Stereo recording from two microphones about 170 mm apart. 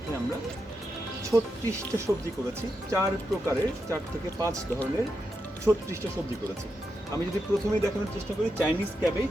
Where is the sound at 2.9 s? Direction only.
15° right (ahead or behind).